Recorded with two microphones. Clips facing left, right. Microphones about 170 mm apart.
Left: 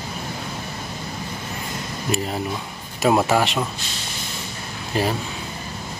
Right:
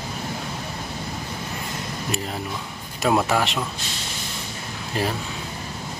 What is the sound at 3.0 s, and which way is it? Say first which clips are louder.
Speech: left 3 dB; 5° left (ahead or behind).